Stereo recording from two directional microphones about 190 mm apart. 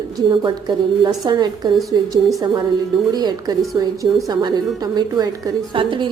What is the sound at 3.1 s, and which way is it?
A woman's voice, 20° right (ahead or behind).